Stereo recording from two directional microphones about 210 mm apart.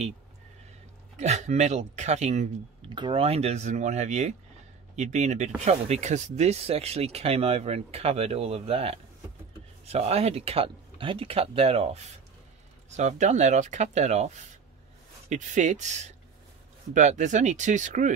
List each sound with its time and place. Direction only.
1.1 s speech: 35° right (ahead or behind)